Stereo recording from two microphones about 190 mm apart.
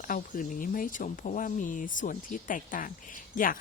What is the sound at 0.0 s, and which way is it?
Speech, 45° left (ahead or behind).